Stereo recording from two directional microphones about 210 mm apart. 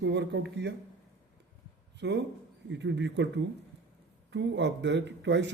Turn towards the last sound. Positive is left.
turn(degrees=-55)  # may be behind; listen again after turning